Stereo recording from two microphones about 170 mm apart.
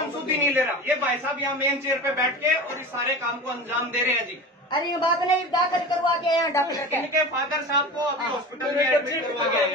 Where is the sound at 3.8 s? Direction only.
10° right (ahead or behind).